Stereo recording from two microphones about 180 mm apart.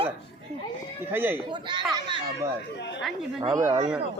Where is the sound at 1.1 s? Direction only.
10° right (ahead or behind).